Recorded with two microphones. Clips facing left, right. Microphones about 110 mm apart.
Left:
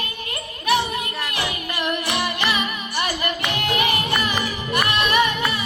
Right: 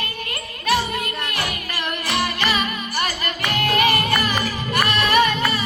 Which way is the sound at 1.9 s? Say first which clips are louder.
Right 1 dB; 20° left (ahead or behind).